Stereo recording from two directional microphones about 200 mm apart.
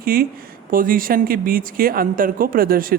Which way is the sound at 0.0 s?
45° right (ahead or behind).